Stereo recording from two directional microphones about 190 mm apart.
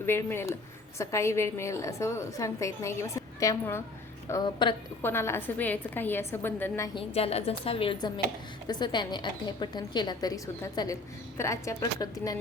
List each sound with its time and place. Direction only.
0.0 s a woman's voice: 10° left (ahead or behind)
7.1 s a woman's voice: 30° left (ahead or behind)